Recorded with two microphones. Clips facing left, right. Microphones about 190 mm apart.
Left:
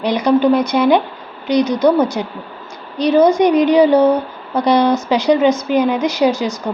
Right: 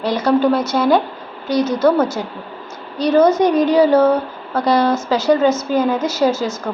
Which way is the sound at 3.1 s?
10° left (ahead or behind).